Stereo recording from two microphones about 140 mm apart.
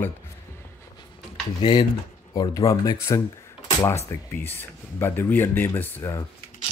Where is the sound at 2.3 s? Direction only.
30° left (ahead or behind).